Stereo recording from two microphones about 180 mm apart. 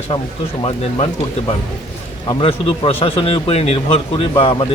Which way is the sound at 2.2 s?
30° left (ahead or behind).